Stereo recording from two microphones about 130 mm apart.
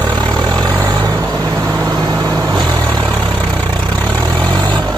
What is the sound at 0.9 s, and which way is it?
Vehicle, 30° right (ahead or behind).